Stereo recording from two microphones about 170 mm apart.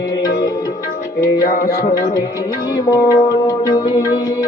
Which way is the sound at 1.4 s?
55° left (ahead or behind).